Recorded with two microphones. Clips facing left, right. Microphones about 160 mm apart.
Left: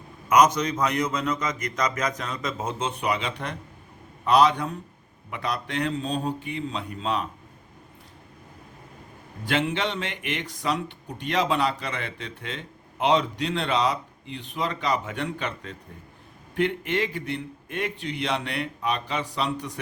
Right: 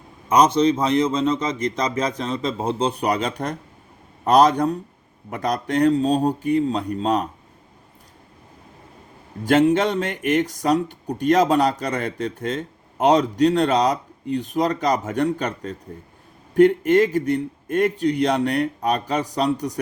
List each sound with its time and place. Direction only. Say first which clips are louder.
0.3 s a man's voice: right 4 dB; 30° right (ahead or behind)
9.4 s speech: right 9 dB; 45° right (ahead or behind)